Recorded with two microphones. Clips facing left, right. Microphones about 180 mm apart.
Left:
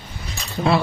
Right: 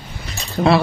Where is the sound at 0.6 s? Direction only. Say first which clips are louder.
Right 5 dB; 65° right (ahead or behind).